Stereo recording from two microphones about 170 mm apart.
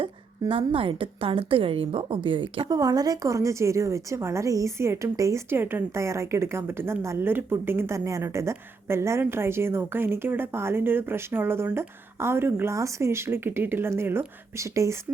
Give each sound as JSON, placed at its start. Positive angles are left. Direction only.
{"t": 0.0, "sound": "a woman's voice", "side_deg": -30}